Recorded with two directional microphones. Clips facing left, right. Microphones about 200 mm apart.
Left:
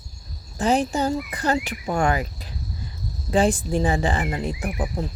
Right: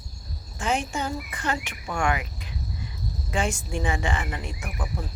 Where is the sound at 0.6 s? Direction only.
35° left (ahead or behind).